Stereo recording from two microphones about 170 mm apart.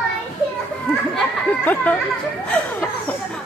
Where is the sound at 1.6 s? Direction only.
10° left (ahead or behind).